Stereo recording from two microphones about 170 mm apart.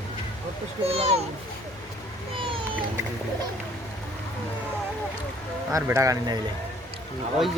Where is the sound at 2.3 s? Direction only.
30° right (ahead or behind).